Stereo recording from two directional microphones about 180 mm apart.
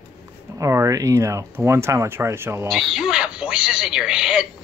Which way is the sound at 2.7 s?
Centre (ahead or behind).